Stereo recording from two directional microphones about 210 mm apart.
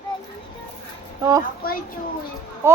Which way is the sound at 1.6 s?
45° left (ahead or behind).